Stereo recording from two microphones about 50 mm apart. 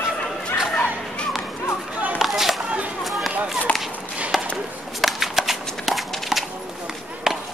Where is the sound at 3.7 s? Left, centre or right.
Left.